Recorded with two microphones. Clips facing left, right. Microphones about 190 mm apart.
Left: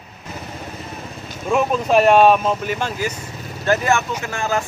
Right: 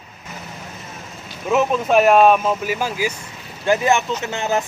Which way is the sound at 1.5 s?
Centre (ahead or behind).